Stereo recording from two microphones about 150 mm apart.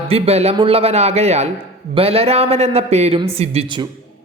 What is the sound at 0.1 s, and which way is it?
A man's voice, 45° right (ahead or behind).